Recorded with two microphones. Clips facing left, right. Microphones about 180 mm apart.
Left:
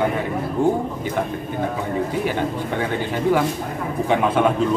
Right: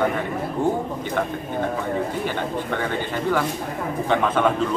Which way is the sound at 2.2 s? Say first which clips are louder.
Left 2 dB; 10° left (ahead or behind).